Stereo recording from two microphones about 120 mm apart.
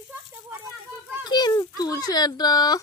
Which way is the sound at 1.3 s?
35° left (ahead or behind).